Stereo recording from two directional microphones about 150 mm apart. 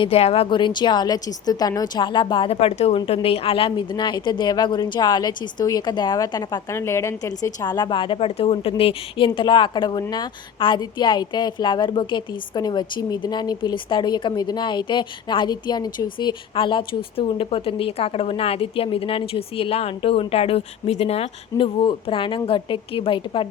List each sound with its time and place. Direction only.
0.0 s a woman's voice: 40° left (ahead or behind)